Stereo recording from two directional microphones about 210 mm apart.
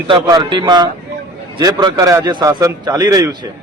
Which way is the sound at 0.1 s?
20° right (ahead or behind).